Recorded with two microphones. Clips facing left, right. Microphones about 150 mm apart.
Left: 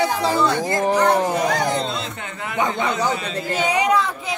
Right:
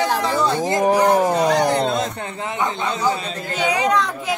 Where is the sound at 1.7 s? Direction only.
50° right (ahead or behind).